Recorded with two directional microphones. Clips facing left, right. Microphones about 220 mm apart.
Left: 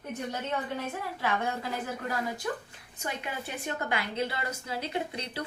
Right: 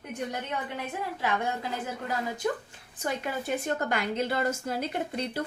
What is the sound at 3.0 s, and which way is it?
A woman's voice, 40° right (ahead or behind).